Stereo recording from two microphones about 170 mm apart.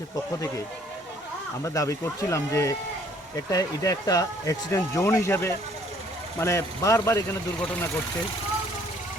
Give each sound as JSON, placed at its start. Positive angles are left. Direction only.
{"t": 0.3, "sound": "speech", "side_deg": 15}
{"t": 1.6, "sound": "speech", "side_deg": 20}